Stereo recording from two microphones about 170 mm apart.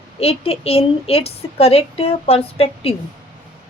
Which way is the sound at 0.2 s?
35° left (ahead or behind).